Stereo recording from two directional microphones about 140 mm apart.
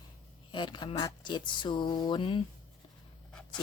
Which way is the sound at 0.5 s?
35° left (ahead or behind).